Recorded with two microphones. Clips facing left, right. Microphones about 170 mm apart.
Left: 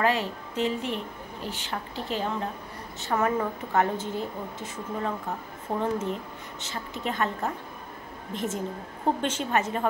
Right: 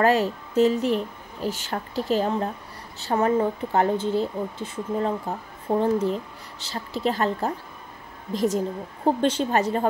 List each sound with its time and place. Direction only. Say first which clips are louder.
0.0 s a woman's voice: right 6 dB; 40° right (ahead or behind)